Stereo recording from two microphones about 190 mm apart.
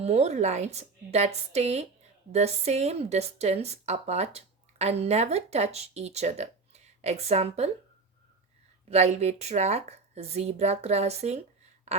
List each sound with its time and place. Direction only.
0.0 s speech: 35° right (ahead or behind)
8.9 s speech: 35° right (ahead or behind)